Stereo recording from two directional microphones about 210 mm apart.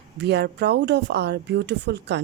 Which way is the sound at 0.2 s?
50° right (ahead or behind).